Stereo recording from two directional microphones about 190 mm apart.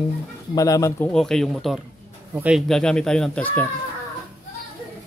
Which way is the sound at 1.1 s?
Centre (ahead or behind).